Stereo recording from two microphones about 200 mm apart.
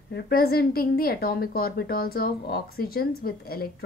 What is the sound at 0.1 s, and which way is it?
A woman's voice, 50° left (ahead or behind).